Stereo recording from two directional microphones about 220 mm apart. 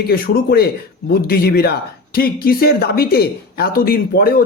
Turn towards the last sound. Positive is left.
turn(degrees=45)  # may be behind; listen again after turning